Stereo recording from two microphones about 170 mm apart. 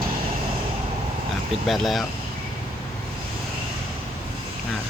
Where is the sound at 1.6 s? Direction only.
Centre (ahead or behind).